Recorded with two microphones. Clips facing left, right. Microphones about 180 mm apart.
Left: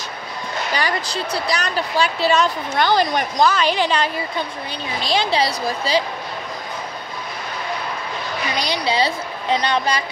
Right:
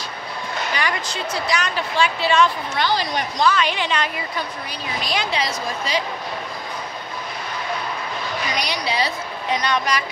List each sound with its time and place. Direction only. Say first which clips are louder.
0.7 s a woman's voice: left 4 dB; 35° left (ahead or behind)
8.5 s a woman's voice: left 5 dB; 30° left (ahead or behind)